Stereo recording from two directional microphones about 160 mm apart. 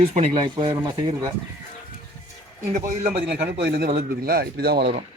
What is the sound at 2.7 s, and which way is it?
Speech, 45° right (ahead or behind).